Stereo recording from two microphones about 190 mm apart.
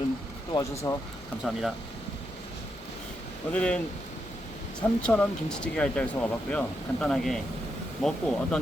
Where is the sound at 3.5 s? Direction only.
5° left (ahead or behind).